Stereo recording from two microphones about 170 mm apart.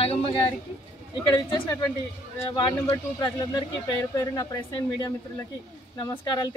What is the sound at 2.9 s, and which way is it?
Speech, 20° left (ahead or behind).